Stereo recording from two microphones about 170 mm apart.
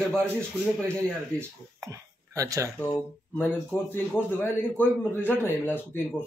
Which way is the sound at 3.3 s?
10° left (ahead or behind).